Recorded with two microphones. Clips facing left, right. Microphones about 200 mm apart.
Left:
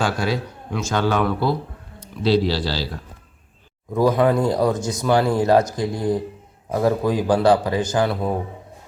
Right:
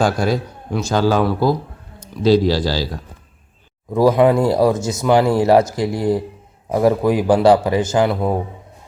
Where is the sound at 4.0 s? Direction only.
15° right (ahead or behind).